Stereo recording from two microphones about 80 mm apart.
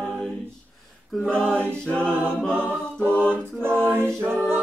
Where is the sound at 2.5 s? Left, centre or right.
Right.